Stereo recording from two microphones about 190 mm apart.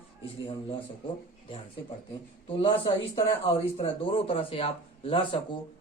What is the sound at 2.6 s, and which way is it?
A man's voice, 25° left (ahead or behind).